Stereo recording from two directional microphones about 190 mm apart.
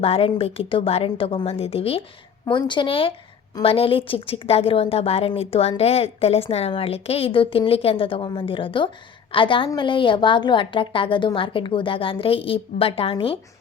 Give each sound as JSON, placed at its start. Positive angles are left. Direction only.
{"t": 0.0, "sound": "a woman's voice", "side_deg": 30}